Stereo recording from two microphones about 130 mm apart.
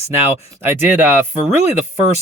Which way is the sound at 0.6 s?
15° right (ahead or behind).